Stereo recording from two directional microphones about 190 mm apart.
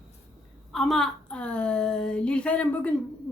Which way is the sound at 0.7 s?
Centre (ahead or behind).